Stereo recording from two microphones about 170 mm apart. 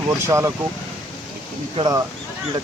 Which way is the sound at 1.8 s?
20° right (ahead or behind).